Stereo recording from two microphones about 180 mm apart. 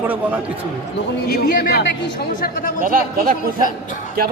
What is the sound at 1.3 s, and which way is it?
Speech, 60° left (ahead or behind).